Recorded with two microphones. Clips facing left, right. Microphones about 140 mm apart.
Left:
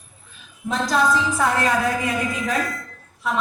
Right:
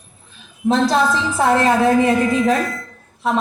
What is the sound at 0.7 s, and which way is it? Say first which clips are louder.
A woman's voice: right 4 dB; 30° right (ahead or behind).